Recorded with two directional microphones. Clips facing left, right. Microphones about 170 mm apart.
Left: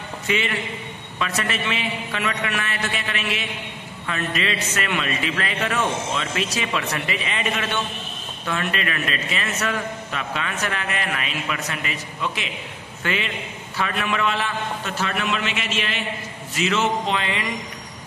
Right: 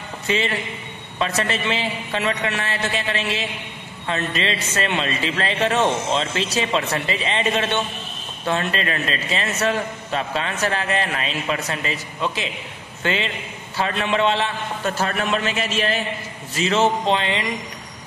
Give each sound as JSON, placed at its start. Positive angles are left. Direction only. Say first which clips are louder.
{"t": 0.3, "sound": "a man's voice", "louder": "right 2 dB", "side_deg": -30}
{"t": 14.9, "sound": "a man's voice", "louder": "right 5 dB", "side_deg": -40}